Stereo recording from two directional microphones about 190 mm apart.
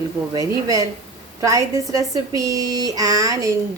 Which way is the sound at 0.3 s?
15° right (ahead or behind).